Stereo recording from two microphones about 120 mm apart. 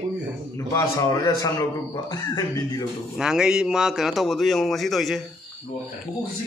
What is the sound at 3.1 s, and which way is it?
Speech, 5° right (ahead or behind).